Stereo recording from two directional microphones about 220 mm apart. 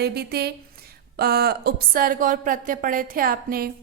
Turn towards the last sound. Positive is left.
turn(degrees=-40)  # may be behind; listen again after turning